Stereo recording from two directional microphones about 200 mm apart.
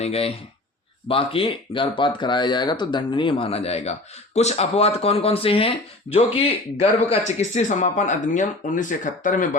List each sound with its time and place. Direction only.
0.0 s speech: 30° left (ahead or behind)